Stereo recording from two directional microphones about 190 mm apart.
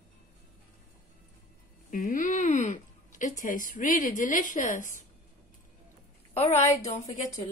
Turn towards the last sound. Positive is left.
turn(degrees=40)  # may be behind; listen again after turning